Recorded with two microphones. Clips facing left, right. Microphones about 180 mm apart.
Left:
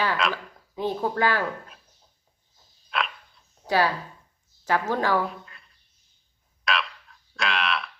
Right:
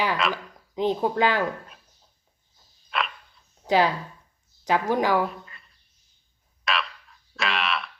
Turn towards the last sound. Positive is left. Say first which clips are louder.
# even
turn(degrees=0)  # may be behind; listen again after turning